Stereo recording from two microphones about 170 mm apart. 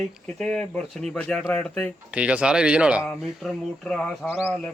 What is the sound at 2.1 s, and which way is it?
Speech, 5° right (ahead or behind).